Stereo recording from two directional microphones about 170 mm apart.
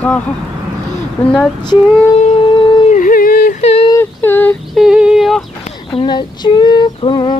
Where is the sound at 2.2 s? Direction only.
35° left (ahead or behind).